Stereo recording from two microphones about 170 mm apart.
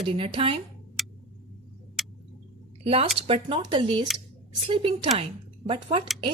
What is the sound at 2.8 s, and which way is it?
Speech, 35° right (ahead or behind).